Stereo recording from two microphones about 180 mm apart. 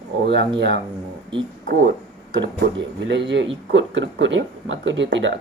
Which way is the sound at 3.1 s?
80° right.